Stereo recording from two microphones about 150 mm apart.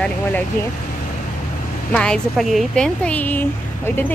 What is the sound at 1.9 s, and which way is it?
Speech, 5° left (ahead or behind).